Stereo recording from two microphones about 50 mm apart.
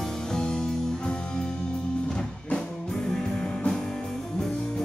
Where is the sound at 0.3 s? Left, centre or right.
Centre.